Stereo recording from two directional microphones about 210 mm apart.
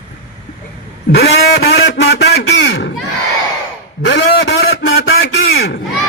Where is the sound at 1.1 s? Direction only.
50° left (ahead or behind).